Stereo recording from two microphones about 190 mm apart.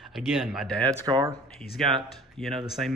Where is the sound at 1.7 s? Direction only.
Centre (ahead or behind).